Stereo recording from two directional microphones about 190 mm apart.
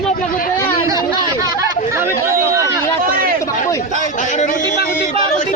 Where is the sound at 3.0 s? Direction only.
50° right (ahead or behind).